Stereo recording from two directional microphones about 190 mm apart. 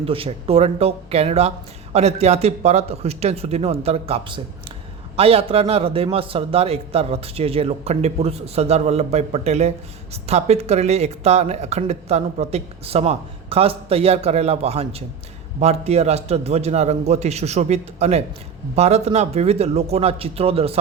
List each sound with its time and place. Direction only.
0.0 s a man's voice: 30° right (ahead or behind)